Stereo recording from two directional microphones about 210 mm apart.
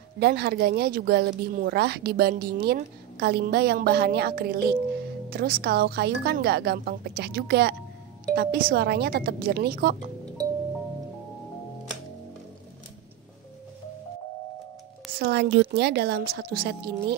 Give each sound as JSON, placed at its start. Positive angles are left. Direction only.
{"t": 0.2, "sound": "speech", "side_deg": -50}
{"t": 15.1, "sound": "speech", "side_deg": -50}